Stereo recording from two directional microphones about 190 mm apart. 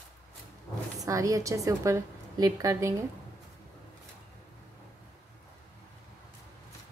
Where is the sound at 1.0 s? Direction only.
15° right (ahead or behind).